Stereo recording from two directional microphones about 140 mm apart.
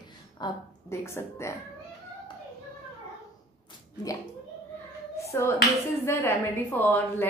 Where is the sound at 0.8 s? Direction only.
20° left (ahead or behind).